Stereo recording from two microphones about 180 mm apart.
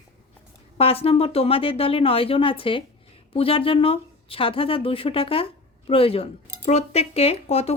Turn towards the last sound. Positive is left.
turn(degrees=35)  # may be behind; listen again after turning